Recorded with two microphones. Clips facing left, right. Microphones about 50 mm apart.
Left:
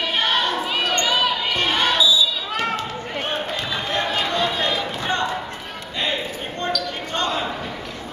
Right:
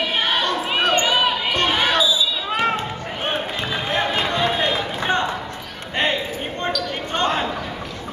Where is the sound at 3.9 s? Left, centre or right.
Right.